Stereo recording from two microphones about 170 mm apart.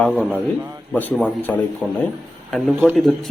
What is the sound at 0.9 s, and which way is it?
A man's voice, 10° left (ahead or behind).